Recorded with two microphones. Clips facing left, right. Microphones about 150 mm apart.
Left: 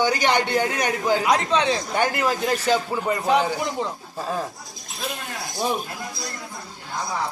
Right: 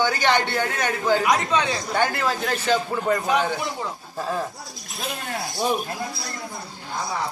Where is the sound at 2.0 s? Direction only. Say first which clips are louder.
Right 1 dB; 15° left (ahead or behind).